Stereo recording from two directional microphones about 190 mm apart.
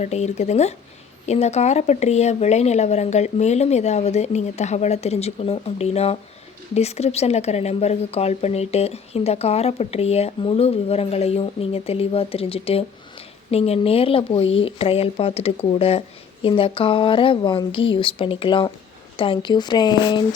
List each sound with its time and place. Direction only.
0.0 s a woman's voice: 35° left (ahead or behind)